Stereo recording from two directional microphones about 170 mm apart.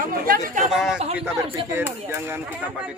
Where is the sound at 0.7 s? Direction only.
5° right (ahead or behind).